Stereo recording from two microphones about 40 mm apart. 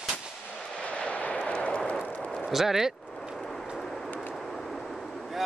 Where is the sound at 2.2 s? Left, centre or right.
Centre.